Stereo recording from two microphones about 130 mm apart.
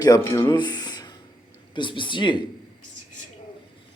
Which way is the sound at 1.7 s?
40° left (ahead or behind).